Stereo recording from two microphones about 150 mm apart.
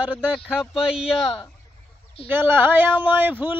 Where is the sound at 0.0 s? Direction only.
5° right (ahead or behind).